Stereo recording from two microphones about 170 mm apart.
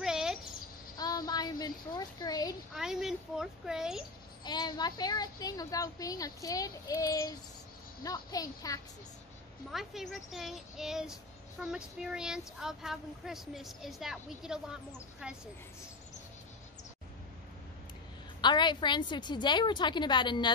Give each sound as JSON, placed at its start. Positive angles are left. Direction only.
{"t": 0.0, "sound": "a sound", "side_deg": -5}
{"t": 0.9, "sound": "a sound", "side_deg": 20}
{"t": 2.7, "sound": "speech", "side_deg": -5}
{"t": 4.5, "sound": "a woman's voice", "side_deg": 25}
{"t": 9.7, "sound": "speech", "side_deg": 0}
{"t": 18.4, "sound": "a woman's voice", "side_deg": 25}